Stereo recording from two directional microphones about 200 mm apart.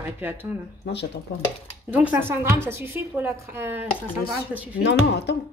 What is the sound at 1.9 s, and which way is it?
A woman's voice, 10° right (ahead or behind).